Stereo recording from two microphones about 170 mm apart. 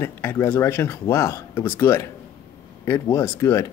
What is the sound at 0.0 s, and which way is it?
Speech, 15° left (ahead or behind).